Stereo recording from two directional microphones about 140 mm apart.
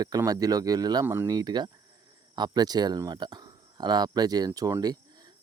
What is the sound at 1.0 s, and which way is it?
Speech, 15° right (ahead or behind).